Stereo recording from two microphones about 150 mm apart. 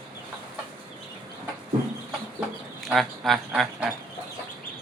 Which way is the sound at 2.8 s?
Centre (ahead or behind).